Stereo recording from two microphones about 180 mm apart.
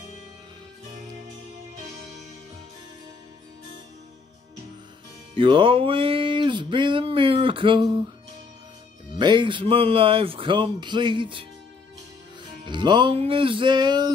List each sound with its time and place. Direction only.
5.3 s music: 30° right (ahead or behind)
9.1 s music: 25° right (ahead or behind)
12.6 s music: 25° right (ahead or behind)